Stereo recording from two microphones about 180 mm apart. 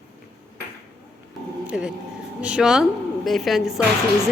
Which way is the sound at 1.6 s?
5° right (ahead or behind).